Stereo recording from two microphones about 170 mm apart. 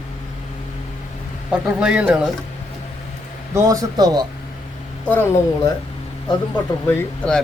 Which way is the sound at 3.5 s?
20° right (ahead or behind).